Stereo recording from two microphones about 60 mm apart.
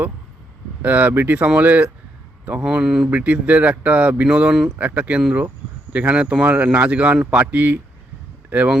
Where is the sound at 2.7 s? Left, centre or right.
Centre.